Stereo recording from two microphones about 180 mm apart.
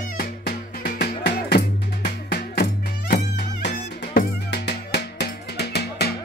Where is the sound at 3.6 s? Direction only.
45° left (ahead or behind).